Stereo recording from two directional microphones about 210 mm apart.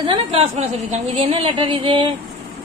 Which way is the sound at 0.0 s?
25° right (ahead or behind).